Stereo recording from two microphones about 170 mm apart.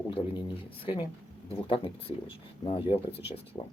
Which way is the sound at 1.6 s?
35° left (ahead or behind).